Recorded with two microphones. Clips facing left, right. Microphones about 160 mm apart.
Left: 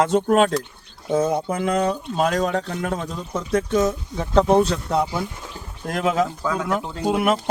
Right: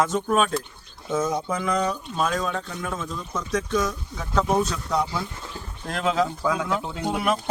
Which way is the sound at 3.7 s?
25° left (ahead or behind).